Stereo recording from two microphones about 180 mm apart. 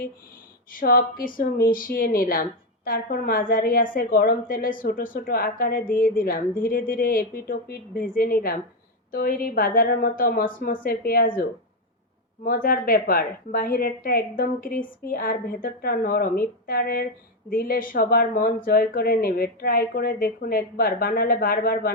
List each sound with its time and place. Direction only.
0.7 s speech: 50° left (ahead or behind)
12.5 s a woman's voice: 50° left (ahead or behind)